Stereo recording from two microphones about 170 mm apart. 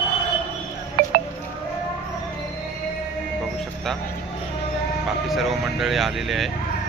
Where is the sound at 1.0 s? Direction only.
55° right (ahead or behind).